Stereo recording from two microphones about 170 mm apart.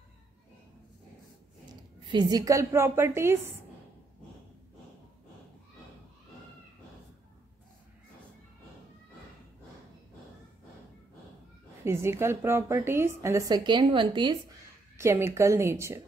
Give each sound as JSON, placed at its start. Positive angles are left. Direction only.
{"t": 2.0, "sound": "a woman's voice", "side_deg": -25}
{"t": 11.8, "sound": "a woman's voice", "side_deg": -15}
{"t": 15.0, "sound": "a woman's voice", "side_deg": -15}